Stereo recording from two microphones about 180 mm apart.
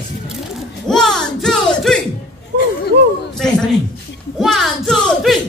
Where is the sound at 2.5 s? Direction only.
70° right (ahead or behind).